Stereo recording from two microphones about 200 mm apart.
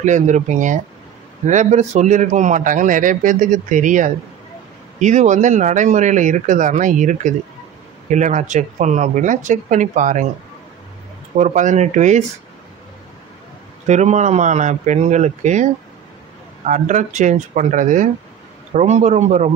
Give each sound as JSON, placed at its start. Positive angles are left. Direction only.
{"t": 0.0, "sound": "speech", "side_deg": -35}
{"t": 11.3, "sound": "speech", "side_deg": -35}
{"t": 13.8, "sound": "speech", "side_deg": -35}